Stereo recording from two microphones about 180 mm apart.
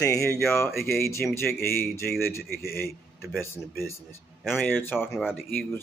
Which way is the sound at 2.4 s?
60° left (ahead or behind).